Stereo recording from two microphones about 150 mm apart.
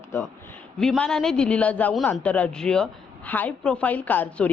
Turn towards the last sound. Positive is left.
turn(degrees=10)  # may be behind; listen again after turning